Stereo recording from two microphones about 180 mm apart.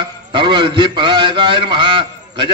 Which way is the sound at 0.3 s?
25° right (ahead or behind).